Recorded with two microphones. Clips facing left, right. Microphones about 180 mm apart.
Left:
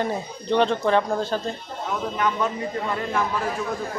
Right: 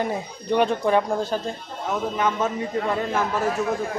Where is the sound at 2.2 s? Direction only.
20° right (ahead or behind).